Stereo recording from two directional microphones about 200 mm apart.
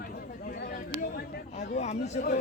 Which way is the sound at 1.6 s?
35° left (ahead or behind).